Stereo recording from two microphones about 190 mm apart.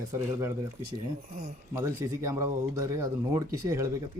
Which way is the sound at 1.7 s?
15° right (ahead or behind).